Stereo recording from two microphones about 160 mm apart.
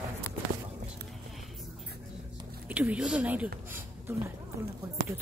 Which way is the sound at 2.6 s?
10° right (ahead or behind).